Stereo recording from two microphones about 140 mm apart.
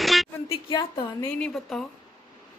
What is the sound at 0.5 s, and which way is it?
Speech, 35° left (ahead or behind).